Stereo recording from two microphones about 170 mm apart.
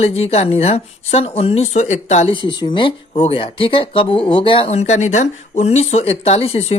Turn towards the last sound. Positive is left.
turn(degrees=35)  # may be behind; listen again after turning